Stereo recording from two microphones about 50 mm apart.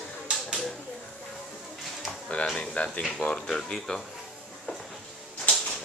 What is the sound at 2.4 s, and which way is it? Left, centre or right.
Speech, centre.